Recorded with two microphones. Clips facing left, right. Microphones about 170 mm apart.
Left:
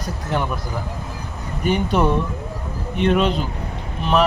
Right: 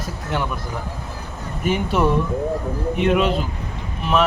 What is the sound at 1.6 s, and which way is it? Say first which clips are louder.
Speech: left 1 dB; centre (ahead or behind).